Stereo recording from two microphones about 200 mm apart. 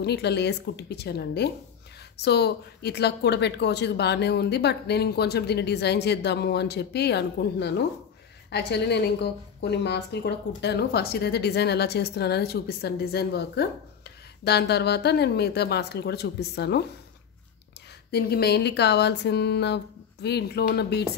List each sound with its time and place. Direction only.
0.0 s speech: 55° left (ahead or behind)
18.1 s speech: 50° left (ahead or behind)